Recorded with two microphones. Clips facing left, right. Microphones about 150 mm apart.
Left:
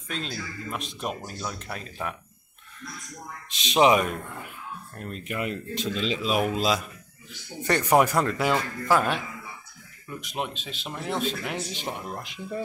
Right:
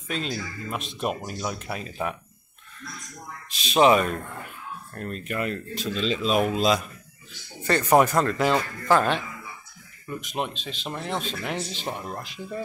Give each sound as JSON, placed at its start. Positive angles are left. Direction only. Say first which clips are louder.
{"t": 0.1, "sound": "speech", "louder": "right 4 dB", "side_deg": -5}
{"t": 1.2, "sound": "speech", "louder": "right 4 dB", "side_deg": -15}
{"t": 3.4, "sound": "speech", "louder": "right 1 dB", "side_deg": 20}
{"t": 7.6, "sound": "speech", "louder": "right 2 dB", "side_deg": 15}
{"t": 10.3, "sound": "speech", "louder": "right 1 dB", "side_deg": 5}